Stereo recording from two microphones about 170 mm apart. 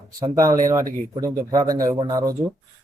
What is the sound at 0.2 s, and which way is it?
Speech, 20° right (ahead or behind).